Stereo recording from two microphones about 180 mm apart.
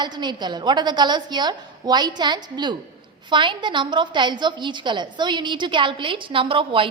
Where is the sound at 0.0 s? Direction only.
25° right (ahead or behind).